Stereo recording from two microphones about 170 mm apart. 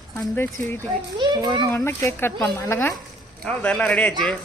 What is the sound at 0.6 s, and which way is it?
Speech, 10° left (ahead or behind).